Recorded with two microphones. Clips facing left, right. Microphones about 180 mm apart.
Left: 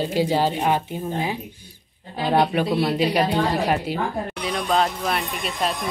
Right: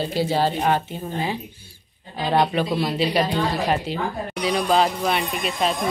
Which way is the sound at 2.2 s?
5° left (ahead or behind).